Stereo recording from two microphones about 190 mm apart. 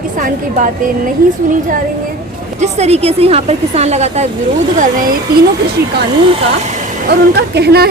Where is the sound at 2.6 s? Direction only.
35° right (ahead or behind).